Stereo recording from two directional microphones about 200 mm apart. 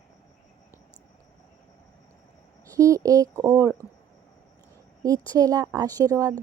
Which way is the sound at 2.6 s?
15° right (ahead or behind).